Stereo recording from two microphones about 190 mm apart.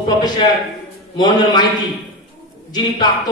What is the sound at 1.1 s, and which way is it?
Speech, 20° left (ahead or behind).